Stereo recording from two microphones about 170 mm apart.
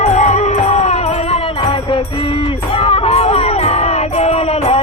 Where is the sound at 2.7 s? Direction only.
35° left (ahead or behind).